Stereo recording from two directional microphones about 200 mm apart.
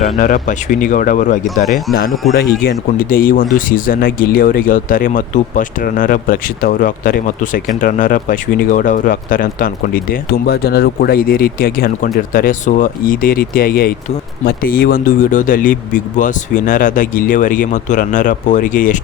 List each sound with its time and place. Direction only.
0.2 s speech: 40° left (ahead or behind)